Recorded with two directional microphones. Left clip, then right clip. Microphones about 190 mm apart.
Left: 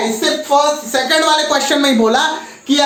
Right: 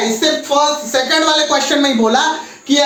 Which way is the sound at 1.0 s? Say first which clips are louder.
Left 1 dB; 20° left (ahead or behind).